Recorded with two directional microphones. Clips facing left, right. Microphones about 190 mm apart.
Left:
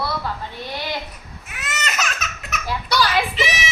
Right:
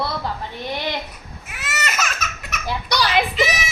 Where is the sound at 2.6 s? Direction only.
20° right (ahead or behind).